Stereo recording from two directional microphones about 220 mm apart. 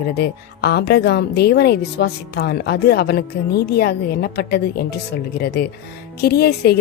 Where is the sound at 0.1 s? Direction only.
45° left (ahead or behind).